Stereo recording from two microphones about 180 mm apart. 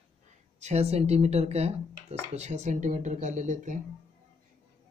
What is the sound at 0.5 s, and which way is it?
Speech, 40° right (ahead or behind).